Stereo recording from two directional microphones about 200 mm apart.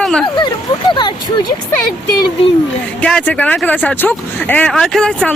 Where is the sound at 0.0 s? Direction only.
5° left (ahead or behind).